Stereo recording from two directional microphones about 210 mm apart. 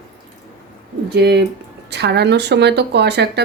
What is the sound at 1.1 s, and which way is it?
Speech, 50° right (ahead or behind).